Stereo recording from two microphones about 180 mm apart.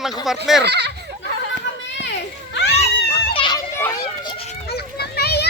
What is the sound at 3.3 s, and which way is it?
Children playing, 25° left (ahead or behind).